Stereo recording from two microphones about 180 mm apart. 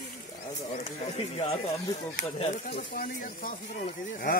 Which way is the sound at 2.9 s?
50° left (ahead or behind).